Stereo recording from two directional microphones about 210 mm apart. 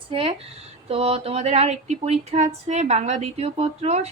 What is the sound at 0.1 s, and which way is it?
Speech, 25° right (ahead or behind).